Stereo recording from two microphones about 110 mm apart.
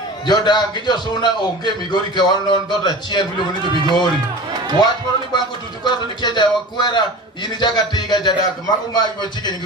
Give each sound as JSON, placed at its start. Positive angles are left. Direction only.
{"t": 0.3, "sound": "a man's voice", "side_deg": 40}